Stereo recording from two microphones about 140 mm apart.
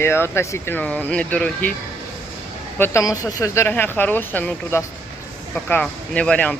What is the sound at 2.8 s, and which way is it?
Speech, 20° left (ahead or behind).